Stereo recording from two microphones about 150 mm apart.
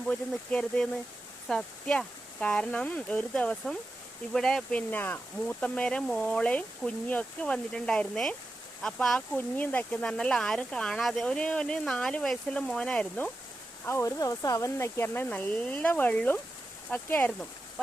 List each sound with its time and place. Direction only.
0.1 s speech: 5° left (ahead or behind)
13.8 s speech: 20° left (ahead or behind)